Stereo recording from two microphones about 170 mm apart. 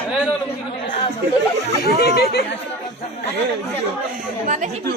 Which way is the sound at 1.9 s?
70° left (ahead or behind).